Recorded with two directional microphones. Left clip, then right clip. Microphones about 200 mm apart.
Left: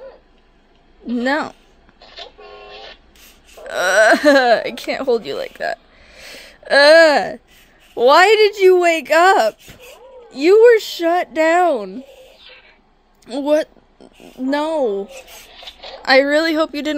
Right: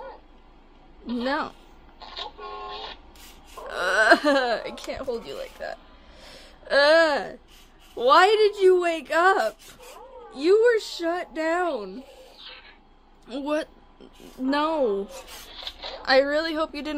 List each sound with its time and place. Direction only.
1.1 s a woman's voice: 20° left (ahead or behind)
3.6 s a woman's voice: 20° left (ahead or behind)
13.3 s speech: 15° left (ahead or behind)
16.0 s a woman's voice: 25° left (ahead or behind)